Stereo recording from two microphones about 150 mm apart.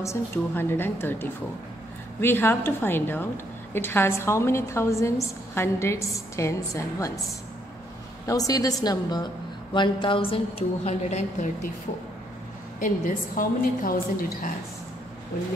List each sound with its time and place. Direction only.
0.0 s a woman's voice: 15° left (ahead or behind)
8.3 s a woman's voice: 25° left (ahead or behind); by 11.7 s 50° left (ahead or behind)
12.8 s a woman's voice: 65° left (ahead or behind)